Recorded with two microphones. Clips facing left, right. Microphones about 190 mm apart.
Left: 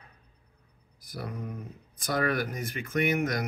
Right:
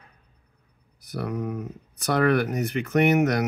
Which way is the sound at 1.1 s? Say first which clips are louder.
Right 8 dB; 75° right (ahead or behind).